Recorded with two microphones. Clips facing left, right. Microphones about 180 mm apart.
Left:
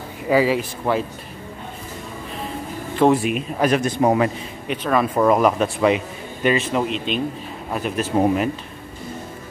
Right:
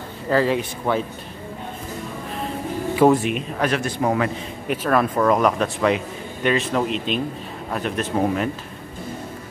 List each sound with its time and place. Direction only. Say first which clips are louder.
0.3 s speech: left 2 dB; 5° left (ahead or behind)
3.0 s speech: right 1 dB; 5° right (ahead or behind)
3.5 s speech: left 6 dB; 15° left (ahead or behind)
4.6 s speech: even; 5° right (ahead or behind)
5.1 s a man's voice: left 2 dB; 5° left (ahead or behind)